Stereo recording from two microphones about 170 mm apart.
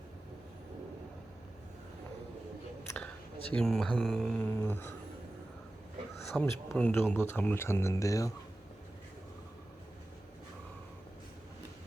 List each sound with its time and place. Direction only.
2.8 s a sound: 5° left (ahead or behind)
3.5 s speech: 5° left (ahead or behind)
6.3 s speech: 10° left (ahead or behind)